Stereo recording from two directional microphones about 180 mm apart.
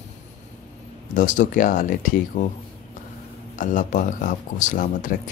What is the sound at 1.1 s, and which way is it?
Speech, 45° left (ahead or behind).